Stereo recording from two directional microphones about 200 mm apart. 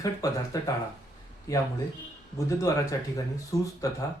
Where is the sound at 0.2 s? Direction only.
15° left (ahead or behind).